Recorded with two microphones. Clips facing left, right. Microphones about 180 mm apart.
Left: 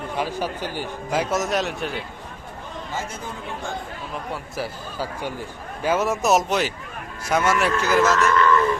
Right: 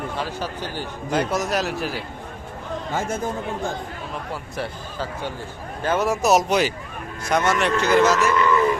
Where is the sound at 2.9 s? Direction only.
50° right (ahead or behind).